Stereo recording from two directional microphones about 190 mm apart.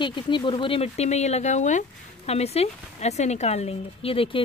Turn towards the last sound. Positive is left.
turn(degrees=30)  # may be behind; listen again after turning